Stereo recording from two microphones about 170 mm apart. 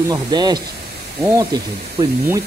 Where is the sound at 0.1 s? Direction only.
25° right (ahead or behind).